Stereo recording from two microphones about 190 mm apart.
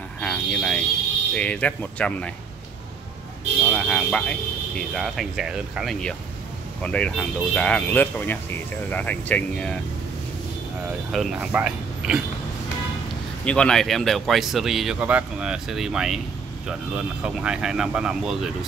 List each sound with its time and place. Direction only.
0.2 s speech: 5° left (ahead or behind)
3.7 s speech: 5° left (ahead or behind)
11.1 s speech: centre (ahead or behind)
13.5 s speech: 5° left (ahead or behind)